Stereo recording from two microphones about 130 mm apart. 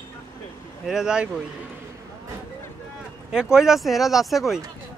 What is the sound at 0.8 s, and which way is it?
Speech, 5° right (ahead or behind).